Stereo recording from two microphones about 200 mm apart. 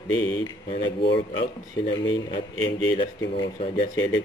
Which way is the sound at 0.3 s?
20° left (ahead or behind).